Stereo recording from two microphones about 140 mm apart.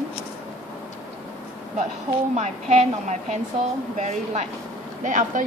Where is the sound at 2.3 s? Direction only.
55° right (ahead or behind).